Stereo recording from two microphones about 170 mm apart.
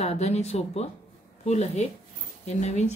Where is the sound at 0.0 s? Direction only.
40° left (ahead or behind).